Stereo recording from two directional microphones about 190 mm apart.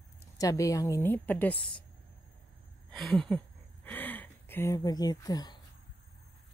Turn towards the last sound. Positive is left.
turn(degrees=20)  # may be behind; listen again after turning